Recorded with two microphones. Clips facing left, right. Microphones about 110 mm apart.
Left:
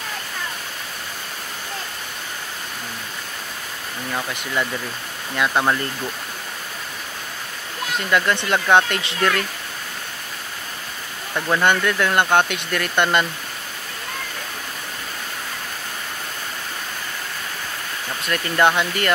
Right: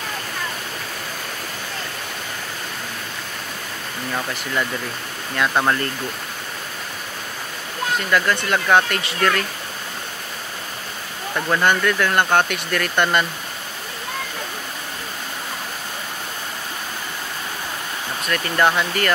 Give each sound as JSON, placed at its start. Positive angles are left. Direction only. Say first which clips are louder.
{"t": 5.5, "sound": "speech", "louder": "even", "side_deg": 0}
{"t": 8.1, "sound": "speech", "louder": "left 1 dB", "side_deg": 25}
{"t": 11.3, "sound": "speech", "louder": "even", "side_deg": 0}
{"t": 11.8, "sound": "speech", "louder": "even", "side_deg": 20}
{"t": 18.3, "sound": "speech", "louder": "left 1 dB", "side_deg": 20}